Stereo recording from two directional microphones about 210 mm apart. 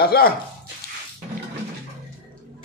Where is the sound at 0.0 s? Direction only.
50° left (ahead or behind).